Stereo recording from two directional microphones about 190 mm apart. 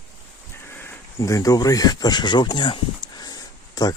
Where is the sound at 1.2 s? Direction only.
20° left (ahead or behind).